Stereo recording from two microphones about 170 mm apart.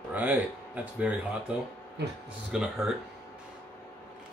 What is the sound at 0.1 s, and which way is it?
Speech, 10° right (ahead or behind).